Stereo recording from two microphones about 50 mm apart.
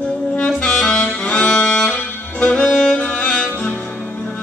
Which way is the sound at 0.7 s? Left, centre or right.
Centre.